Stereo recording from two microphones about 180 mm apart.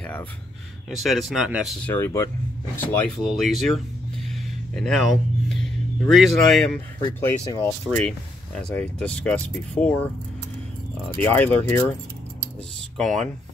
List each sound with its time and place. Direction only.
0.0 s a sound: 10° left (ahead or behind)
0.8 s speech: centre (ahead or behind)
4.7 s speech: centre (ahead or behind)
7.2 s speech: 15° left (ahead or behind)
7.9 s speech: 5° left (ahead or behind)
11.1 s speech: 10° left (ahead or behind)
12.9 s speech: 5° left (ahead or behind)